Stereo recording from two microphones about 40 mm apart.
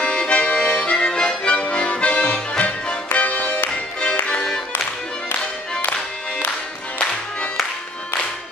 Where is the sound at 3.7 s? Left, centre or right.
Left.